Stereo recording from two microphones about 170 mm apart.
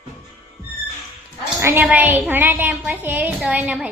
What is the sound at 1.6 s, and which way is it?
A woman's voice, 10° right (ahead or behind).